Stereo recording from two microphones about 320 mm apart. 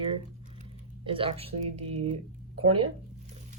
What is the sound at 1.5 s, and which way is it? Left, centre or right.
Speech, right.